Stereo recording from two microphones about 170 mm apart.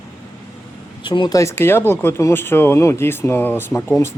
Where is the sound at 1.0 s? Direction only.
30° left (ahead or behind).